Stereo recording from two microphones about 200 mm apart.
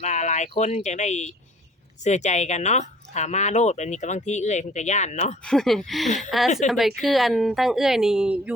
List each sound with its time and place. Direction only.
0.0 s speech: 35° left (ahead or behind)
5.5 s a woman's voice: centre (ahead or behind)